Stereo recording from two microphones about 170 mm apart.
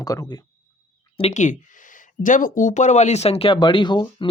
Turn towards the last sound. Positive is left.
turn(degrees=25)  # may be behind; listen again after turning